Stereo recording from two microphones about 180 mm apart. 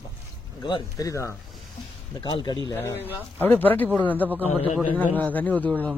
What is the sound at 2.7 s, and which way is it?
Speech, 15° left (ahead or behind).